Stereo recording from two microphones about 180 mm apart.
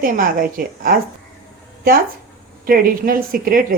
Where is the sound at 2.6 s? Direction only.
50° right (ahead or behind).